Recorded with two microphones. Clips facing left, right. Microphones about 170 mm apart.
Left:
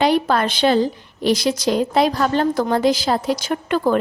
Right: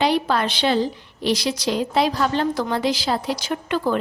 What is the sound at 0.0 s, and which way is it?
Speech, 50° left (ahead or behind).